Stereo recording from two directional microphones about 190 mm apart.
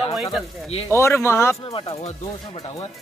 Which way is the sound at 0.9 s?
15° left (ahead or behind).